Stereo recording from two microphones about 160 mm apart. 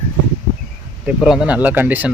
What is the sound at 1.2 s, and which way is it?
Speech, 5° right (ahead or behind).